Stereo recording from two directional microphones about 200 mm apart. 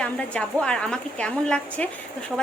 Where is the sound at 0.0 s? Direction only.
5° left (ahead or behind).